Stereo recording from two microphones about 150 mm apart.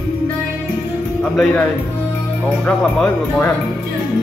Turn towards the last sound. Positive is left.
turn(degrees=5)  # may be behind; listen again after turning